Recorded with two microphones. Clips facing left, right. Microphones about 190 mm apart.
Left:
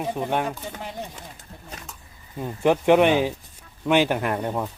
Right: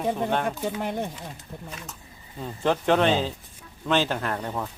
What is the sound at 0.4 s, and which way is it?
Speech, 55° right (ahead or behind).